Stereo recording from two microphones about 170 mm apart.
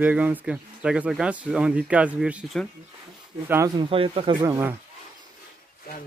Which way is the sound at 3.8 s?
30° right (ahead or behind).